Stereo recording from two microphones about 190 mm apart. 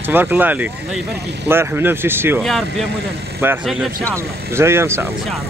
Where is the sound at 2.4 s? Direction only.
Centre (ahead or behind).